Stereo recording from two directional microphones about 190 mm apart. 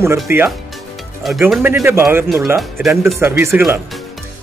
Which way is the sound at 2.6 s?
Centre (ahead or behind).